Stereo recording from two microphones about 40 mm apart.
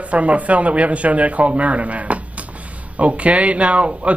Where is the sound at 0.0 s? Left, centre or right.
Right.